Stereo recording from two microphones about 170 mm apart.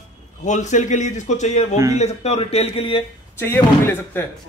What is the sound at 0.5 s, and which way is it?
A man's voice, 45° left (ahead or behind).